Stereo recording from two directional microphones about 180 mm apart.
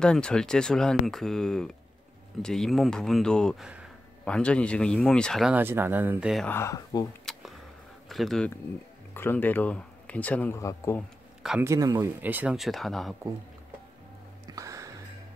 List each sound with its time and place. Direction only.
0.0 s speech: 5° left (ahead or behind)
6.4 s speech: 15° left (ahead or behind)
7.2 s a sound: centre (ahead or behind)
8.1 s speech: centre (ahead or behind)
9.1 s speech: 10° left (ahead or behind)
11.0 s a sound: centre (ahead or behind)
11.6 s a man's voice: 20° right (ahead or behind); by 13.1 s centre (ahead or behind)
14.5 s music: 20° right (ahead or behind)